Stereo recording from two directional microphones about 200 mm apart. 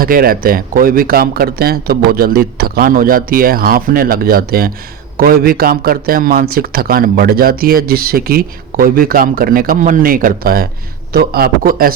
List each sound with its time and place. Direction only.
0.0 s a man's voice: 45° right (ahead or behind)